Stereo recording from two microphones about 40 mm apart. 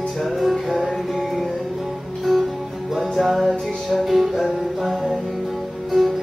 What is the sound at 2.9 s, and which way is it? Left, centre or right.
Music, centre.